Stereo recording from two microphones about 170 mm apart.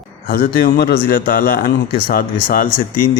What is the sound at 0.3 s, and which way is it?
Speech, 60° left (ahead or behind).